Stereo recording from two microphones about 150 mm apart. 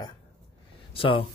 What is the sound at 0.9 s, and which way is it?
Speech, 35° left (ahead or behind).